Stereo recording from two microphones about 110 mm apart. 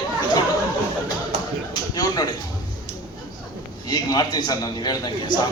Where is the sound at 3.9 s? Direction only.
40° left (ahead or behind).